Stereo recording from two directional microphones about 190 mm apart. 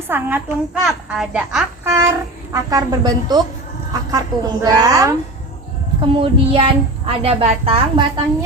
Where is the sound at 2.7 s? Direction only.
20° right (ahead or behind).